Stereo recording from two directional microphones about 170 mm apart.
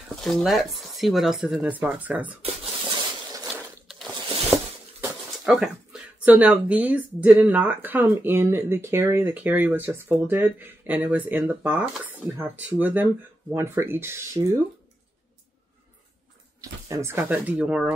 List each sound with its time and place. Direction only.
0.1 s speech: centre (ahead or behind)
4.5 s a sound: 15° right (ahead or behind)
5.4 s speech: centre (ahead or behind); by 14.6 s 15° right (ahead or behind)
16.8 s speech: 15° right (ahead or behind)